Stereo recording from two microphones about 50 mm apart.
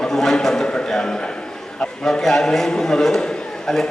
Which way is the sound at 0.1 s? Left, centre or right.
Centre.